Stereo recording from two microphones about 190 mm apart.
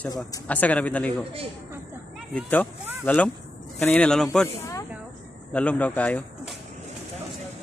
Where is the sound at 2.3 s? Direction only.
10° left (ahead or behind).